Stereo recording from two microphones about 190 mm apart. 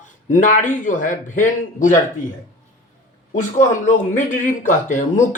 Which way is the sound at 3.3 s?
40° left (ahead or behind).